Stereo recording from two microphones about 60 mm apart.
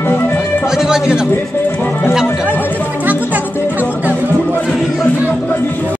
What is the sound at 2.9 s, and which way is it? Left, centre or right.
Music, right.